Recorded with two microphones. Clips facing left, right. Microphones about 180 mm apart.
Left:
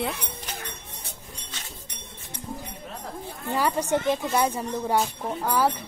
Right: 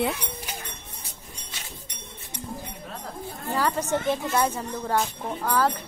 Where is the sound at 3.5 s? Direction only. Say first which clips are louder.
Left 1 dB; 10° left (ahead or behind).